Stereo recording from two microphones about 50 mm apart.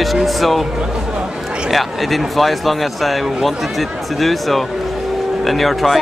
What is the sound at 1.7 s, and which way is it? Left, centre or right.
Speech, centre.